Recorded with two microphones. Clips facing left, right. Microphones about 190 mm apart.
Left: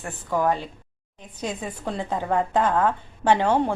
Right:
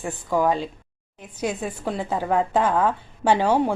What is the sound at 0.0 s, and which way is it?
A woman's voice, 10° right (ahead or behind).